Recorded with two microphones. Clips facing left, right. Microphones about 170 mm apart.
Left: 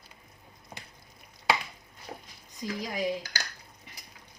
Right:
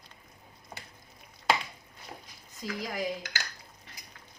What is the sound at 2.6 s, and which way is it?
Speech, 20° left (ahead or behind).